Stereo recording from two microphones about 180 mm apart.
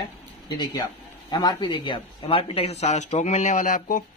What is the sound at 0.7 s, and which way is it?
Speech, 25° left (ahead or behind).